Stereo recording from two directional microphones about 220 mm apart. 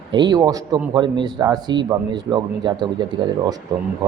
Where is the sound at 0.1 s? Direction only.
20° right (ahead or behind).